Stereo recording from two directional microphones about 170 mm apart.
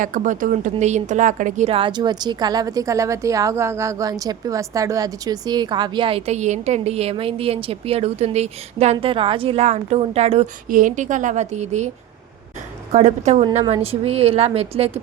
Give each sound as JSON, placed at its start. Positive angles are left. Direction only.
{"t": 0.0, "sound": "a woman's voice", "side_deg": -50}
{"t": 10.7, "sound": "a woman's voice", "side_deg": -50}
{"t": 12.9, "sound": "a woman's voice", "side_deg": -45}